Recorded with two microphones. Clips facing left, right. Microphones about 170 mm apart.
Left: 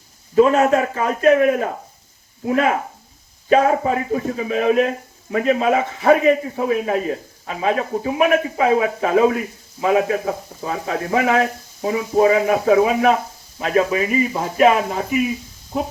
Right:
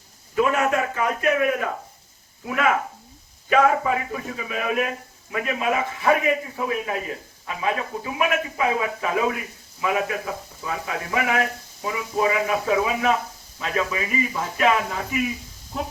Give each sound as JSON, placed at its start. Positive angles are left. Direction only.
{"t": 0.3, "sound": "a man's voice", "side_deg": 30}